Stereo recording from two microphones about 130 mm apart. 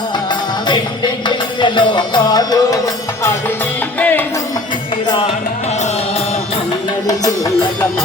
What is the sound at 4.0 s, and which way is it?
Music, 15° left (ahead or behind).